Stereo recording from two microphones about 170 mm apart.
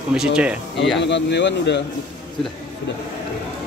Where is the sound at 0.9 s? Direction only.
90° left.